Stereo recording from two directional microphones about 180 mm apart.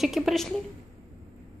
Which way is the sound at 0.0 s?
Centre (ahead or behind).